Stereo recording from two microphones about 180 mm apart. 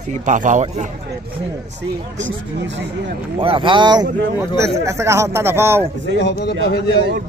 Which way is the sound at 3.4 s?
30° right (ahead or behind).